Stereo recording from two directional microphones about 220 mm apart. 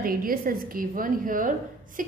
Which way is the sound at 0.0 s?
40° right (ahead or behind).